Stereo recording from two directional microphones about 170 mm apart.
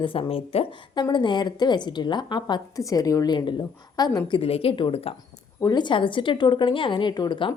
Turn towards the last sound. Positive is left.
turn(degrees=25)  # may be behind; listen again after turning